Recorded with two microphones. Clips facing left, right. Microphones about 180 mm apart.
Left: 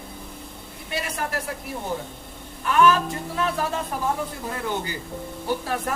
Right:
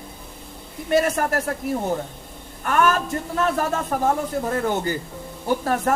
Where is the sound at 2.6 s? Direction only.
50° right (ahead or behind).